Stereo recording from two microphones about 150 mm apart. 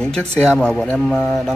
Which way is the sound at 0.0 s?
5° left (ahead or behind).